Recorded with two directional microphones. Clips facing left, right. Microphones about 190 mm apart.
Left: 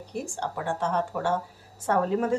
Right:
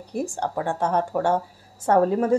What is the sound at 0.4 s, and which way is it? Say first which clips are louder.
A woman's voice: right 3 dB; 45° right (ahead or behind).